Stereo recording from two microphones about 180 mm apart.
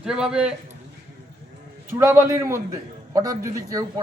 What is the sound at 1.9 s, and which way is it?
A man's voice, 15° right (ahead or behind).